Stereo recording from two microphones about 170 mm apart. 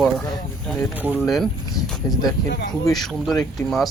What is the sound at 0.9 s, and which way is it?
Speech, 10° right (ahead or behind).